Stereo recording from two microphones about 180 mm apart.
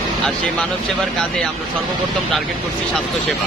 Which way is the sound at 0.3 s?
5° left (ahead or behind).